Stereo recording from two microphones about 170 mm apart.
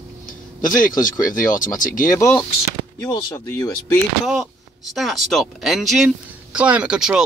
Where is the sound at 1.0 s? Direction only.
20° left (ahead or behind).